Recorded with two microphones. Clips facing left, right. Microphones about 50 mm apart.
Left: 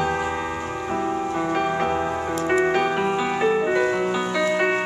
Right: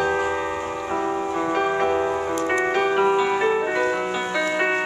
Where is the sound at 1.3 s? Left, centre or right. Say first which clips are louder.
Right 2 dB; centre.